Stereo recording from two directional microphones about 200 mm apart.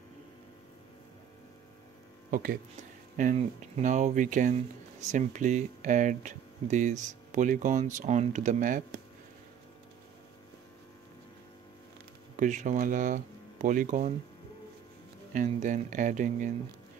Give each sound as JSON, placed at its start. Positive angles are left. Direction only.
{"t": 2.3, "sound": "speech", "side_deg": -45}
{"t": 12.4, "sound": "speech", "side_deg": -40}
{"t": 15.3, "sound": "speech", "side_deg": -40}